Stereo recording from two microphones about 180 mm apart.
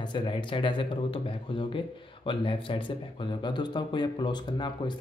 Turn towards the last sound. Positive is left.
turn(degrees=25)  # may be behind; listen again after turning